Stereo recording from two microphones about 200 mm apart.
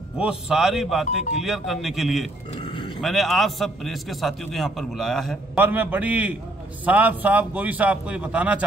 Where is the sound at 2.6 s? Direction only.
25° left (ahead or behind).